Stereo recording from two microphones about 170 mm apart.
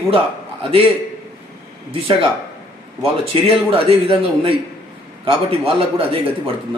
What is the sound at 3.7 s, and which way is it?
A man's voice, 35° right (ahead or behind).